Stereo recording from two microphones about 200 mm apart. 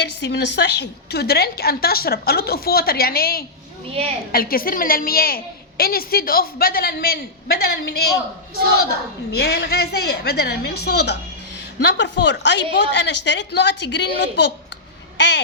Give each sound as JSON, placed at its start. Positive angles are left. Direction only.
{"t": 0.0, "sound": "a woman's voice", "side_deg": 60}
{"t": 9.3, "sound": "a woman's voice", "side_deg": 55}